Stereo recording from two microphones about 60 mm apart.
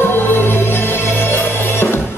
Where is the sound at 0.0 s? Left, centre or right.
Left.